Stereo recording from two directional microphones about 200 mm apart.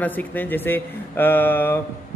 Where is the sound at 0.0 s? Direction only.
10° left (ahead or behind).